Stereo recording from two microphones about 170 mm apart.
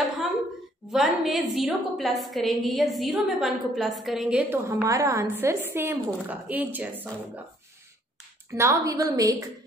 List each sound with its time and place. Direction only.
0.9 s a woman's voice: centre (ahead or behind)
4.6 s a woman's voice: 15° right (ahead or behind)
8.5 s a woman's voice: 15° right (ahead or behind)